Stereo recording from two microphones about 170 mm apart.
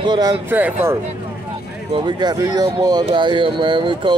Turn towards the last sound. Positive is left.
turn(degrees=-30)  # may be behind; listen again after turning